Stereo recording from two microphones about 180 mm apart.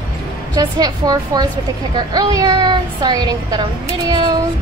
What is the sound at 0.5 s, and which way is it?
Speech, 20° right (ahead or behind).